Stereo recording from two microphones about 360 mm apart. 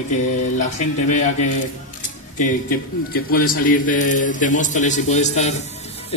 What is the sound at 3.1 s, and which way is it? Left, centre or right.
A man's voice, left.